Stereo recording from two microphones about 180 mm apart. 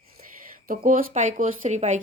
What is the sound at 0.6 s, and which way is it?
Speech, 50° right (ahead or behind).